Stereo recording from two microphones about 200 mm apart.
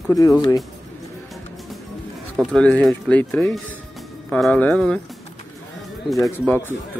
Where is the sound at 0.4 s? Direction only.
20° left (ahead or behind).